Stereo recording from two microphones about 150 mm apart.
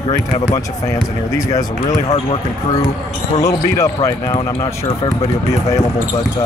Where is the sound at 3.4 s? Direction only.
25° left (ahead or behind).